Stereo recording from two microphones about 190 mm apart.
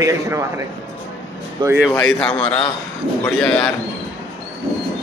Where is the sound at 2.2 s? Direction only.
5° left (ahead or behind).